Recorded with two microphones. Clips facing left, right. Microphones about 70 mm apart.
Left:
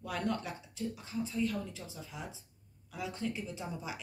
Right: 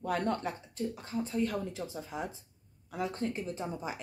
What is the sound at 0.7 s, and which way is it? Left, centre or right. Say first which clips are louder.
Speech: right 3 dB; right.